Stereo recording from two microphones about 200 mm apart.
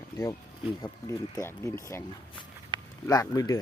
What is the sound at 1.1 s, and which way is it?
Speech, 15° left (ahead or behind).